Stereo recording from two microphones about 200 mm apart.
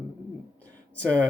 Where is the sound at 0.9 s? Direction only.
5° left (ahead or behind).